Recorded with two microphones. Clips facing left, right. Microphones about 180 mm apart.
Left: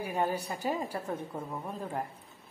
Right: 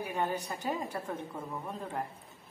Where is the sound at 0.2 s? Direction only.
10° left (ahead or behind).